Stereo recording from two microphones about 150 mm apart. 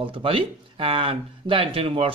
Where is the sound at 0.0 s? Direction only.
35° right (ahead or behind).